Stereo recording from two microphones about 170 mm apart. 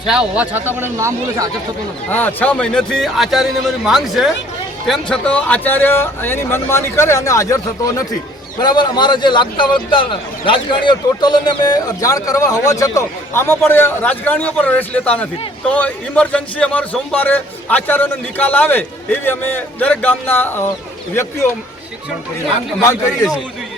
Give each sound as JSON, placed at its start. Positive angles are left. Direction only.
{"t": 0.0, "sound": "speech", "side_deg": -5}
{"t": 2.0, "sound": "a man's voice", "side_deg": 10}